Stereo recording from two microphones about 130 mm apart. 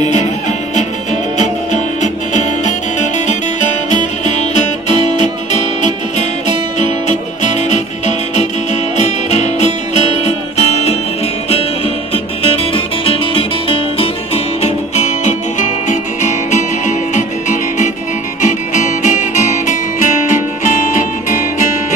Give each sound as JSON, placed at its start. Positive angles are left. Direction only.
{"t": 0.0, "sound": "music", "side_deg": 65}
{"t": 4.2, "sound": "music", "side_deg": 60}
{"t": 12.1, "sound": "music", "side_deg": 45}